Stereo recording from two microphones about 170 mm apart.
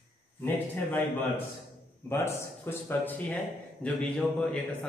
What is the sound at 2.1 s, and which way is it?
Speech, 15° left (ahead or behind).